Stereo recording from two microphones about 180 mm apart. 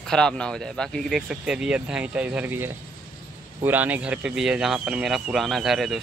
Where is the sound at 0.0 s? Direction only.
5° left (ahead or behind).